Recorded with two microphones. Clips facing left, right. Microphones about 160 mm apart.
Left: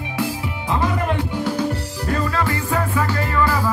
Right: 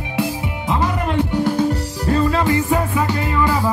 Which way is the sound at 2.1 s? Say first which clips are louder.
Right 5 dB; 20° right (ahead or behind).